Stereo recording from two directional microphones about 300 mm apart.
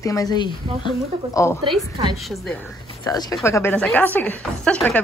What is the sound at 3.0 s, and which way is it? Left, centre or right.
A woman's voice, centre.